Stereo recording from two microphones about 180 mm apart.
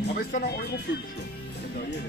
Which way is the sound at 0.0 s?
60° left (ahead or behind).